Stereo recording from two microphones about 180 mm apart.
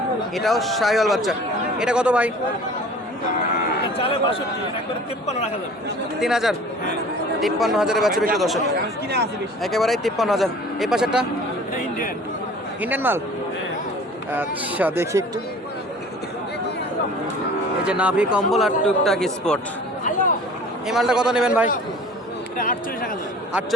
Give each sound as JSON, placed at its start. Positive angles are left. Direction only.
{"t": 0.3, "sound": "speech", "side_deg": 0}
{"t": 3.9, "sound": "speech", "side_deg": 30}
{"t": 6.1, "sound": "speech", "side_deg": 0}
{"t": 8.7, "sound": "speech", "side_deg": -65}
{"t": 9.6, "sound": "speech", "side_deg": 0}
{"t": 12.8, "sound": "speech", "side_deg": -10}
{"t": 14.3, "sound": "speech", "side_deg": -10}
{"t": 17.8, "sound": "speech", "side_deg": -5}
{"t": 20.8, "sound": "speech", "side_deg": -5}
{"t": 22.5, "sound": "speech", "side_deg": 50}